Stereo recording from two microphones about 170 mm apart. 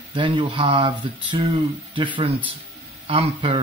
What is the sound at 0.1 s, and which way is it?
Speech, 30° right (ahead or behind).